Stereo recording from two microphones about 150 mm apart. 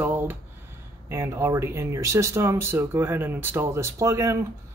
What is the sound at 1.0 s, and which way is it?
Speech, 20° right (ahead or behind).